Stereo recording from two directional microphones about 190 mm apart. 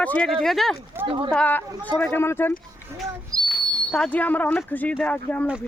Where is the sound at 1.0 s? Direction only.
25° right (ahead or behind).